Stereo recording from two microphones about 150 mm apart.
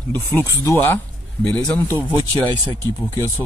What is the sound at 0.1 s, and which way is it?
Speech, 10° left (ahead or behind).